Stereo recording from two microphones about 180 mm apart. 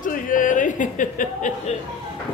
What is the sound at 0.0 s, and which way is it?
Chuckle, 45° left (ahead or behind).